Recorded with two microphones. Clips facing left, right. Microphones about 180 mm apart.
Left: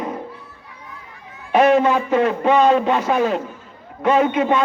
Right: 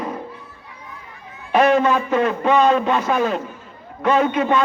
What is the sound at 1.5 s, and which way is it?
A man's voice, 25° left (ahead or behind).